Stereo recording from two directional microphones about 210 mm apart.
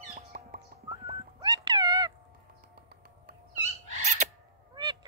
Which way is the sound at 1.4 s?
20° right (ahead or behind).